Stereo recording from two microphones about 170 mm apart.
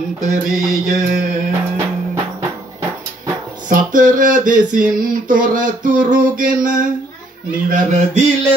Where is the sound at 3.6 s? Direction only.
50° right (ahead or behind).